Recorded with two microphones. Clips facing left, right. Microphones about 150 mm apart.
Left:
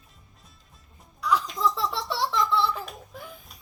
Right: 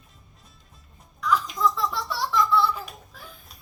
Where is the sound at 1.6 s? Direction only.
30° left (ahead or behind).